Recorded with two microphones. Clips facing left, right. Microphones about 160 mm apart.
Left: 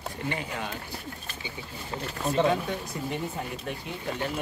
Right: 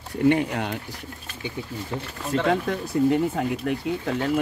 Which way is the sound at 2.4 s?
80° right.